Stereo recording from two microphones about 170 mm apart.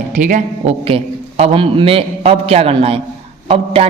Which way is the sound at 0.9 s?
30° right (ahead or behind).